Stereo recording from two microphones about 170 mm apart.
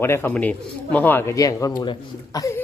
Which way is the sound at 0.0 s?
15° left (ahead or behind).